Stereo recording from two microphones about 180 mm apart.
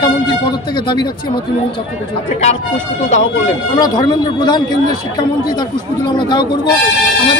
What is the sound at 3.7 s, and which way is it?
A man's voice, 25° left (ahead or behind).